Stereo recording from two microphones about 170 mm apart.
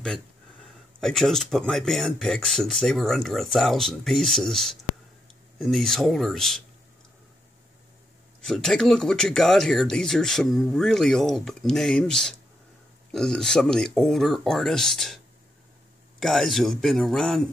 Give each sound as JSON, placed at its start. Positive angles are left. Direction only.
{"t": 0.0, "sound": "speech", "side_deg": 5}
{"t": 8.4, "sound": "speech", "side_deg": 5}
{"t": 16.2, "sound": "speech", "side_deg": 0}